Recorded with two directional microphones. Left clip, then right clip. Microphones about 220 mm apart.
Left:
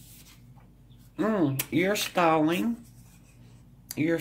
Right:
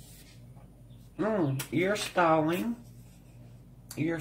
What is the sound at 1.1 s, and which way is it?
Speech, 45° left (ahead or behind).